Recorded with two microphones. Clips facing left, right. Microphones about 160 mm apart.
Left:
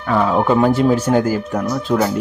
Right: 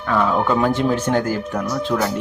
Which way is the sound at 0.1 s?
15° left (ahead or behind).